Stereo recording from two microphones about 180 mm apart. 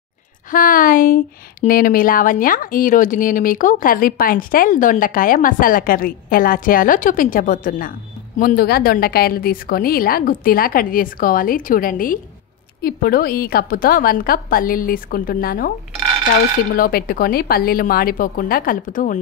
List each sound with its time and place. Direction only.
0.5 s a woman's voice: 50° left (ahead or behind)
16.7 s speech: 55° left (ahead or behind)